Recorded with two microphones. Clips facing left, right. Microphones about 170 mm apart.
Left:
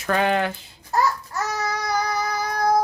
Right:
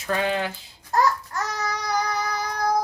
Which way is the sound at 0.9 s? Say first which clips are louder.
Even; 5° left (ahead or behind).